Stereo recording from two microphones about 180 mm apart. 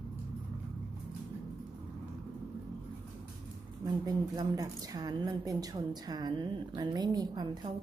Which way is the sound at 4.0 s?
20° right (ahead or behind).